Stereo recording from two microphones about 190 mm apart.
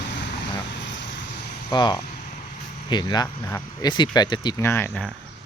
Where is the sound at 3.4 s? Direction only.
10° left (ahead or behind).